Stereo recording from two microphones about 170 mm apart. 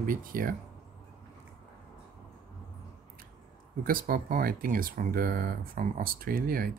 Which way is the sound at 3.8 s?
60° right (ahead or behind).